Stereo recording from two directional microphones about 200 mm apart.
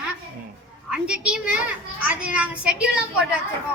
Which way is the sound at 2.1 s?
5° right (ahead or behind).